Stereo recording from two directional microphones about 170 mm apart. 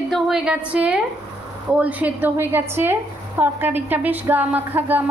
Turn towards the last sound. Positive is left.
turn(degrees=-10)  # may be behind; listen again after turning